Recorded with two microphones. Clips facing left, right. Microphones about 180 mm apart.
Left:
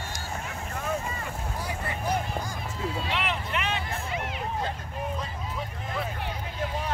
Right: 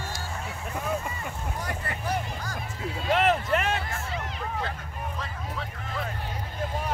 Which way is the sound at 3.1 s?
45° right (ahead or behind).